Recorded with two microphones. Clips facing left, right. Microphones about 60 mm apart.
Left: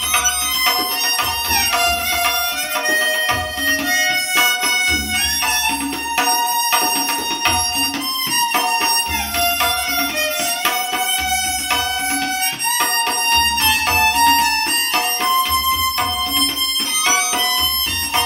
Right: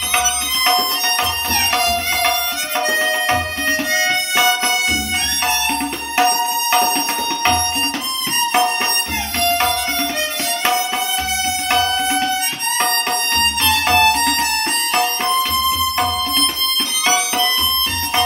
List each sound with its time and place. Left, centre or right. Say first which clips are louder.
1.8 s music: even; left
3.0 s music: right 1 dB; right
5.7 s music: even; right
12.8 s music: even; left